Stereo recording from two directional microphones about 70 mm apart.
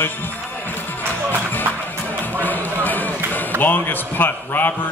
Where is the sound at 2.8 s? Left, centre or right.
Left.